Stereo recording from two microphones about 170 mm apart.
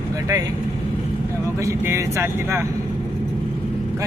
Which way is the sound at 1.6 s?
15° right (ahead or behind).